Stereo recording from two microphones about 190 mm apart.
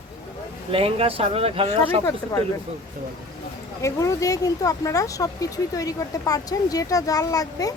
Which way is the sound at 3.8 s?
15° left (ahead or behind).